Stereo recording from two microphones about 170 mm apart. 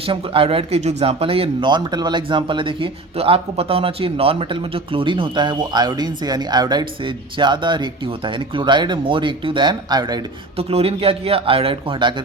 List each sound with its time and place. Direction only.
0.0 s speech: 35° right (ahead or behind)
10.6 s speech: 35° right (ahead or behind)